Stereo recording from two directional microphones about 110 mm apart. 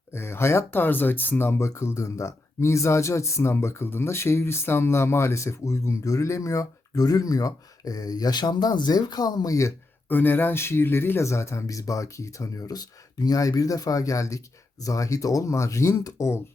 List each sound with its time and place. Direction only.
0.1 s speech: 25° left (ahead or behind)